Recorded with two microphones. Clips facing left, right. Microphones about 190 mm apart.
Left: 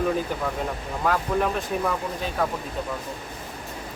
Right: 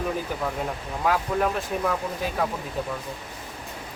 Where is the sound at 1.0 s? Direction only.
5° right (ahead or behind).